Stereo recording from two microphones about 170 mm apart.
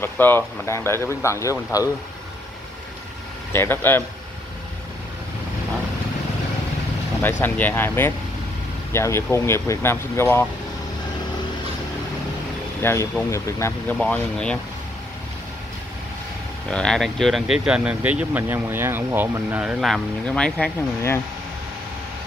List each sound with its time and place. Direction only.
0.0 s speech: 10° left (ahead or behind)
3.5 s speech: 10° left (ahead or behind)
7.4 s speech: 10° left (ahead or behind)
12.8 s speech: 15° left (ahead or behind)
13.9 s speech: 5° left (ahead or behind)
16.7 s speech: 5° left (ahead or behind)